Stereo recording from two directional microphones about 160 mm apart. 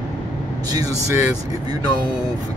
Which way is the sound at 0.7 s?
20° right (ahead or behind).